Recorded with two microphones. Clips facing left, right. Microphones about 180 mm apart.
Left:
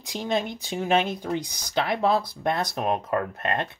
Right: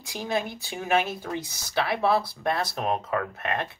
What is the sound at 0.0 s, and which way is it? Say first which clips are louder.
Speech: left 2 dB; 20° left (ahead or behind).